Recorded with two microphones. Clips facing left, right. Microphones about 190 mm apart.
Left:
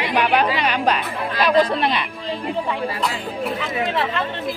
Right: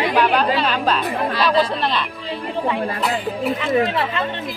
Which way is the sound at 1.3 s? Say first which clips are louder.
Left 2 dB; 50° left (ahead or behind).